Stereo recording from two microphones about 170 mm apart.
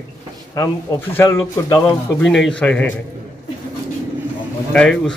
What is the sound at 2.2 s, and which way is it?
Speech, 5° left (ahead or behind).